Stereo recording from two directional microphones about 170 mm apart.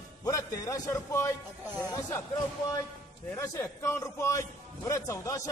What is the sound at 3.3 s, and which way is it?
A man's voice, 15° left (ahead or behind).